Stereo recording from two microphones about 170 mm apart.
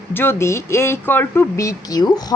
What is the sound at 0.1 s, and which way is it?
Speech, 10° left (ahead or behind).